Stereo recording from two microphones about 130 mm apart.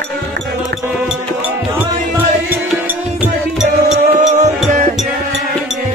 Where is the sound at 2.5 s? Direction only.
15° right (ahead or behind).